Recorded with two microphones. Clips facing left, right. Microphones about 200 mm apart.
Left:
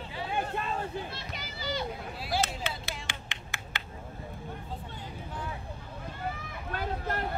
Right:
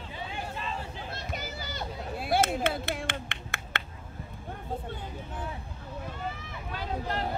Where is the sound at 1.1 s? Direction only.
45° right (ahead or behind).